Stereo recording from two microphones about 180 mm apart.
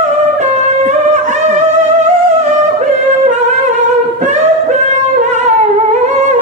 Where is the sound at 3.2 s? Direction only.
40° right (ahead or behind).